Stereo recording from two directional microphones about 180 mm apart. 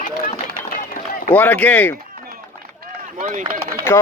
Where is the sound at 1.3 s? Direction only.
10° left (ahead or behind).